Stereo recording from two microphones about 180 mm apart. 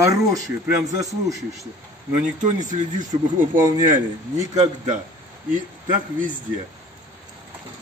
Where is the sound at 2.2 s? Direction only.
45° right (ahead or behind).